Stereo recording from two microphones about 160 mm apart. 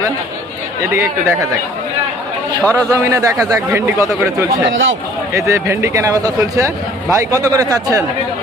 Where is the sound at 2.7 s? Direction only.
20° right (ahead or behind).